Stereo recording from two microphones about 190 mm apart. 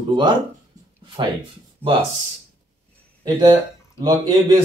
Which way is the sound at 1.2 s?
25° right (ahead or behind).